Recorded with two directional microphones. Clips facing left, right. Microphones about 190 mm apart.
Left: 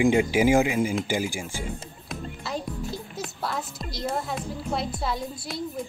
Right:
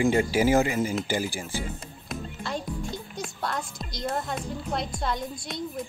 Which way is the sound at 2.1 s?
5° left (ahead or behind).